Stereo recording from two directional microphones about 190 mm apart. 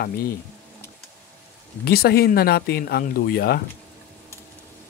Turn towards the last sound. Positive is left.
turn(degrees=55)  # may be behind; listen again after turning